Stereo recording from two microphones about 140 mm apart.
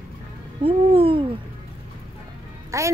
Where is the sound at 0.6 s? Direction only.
40° right (ahead or behind).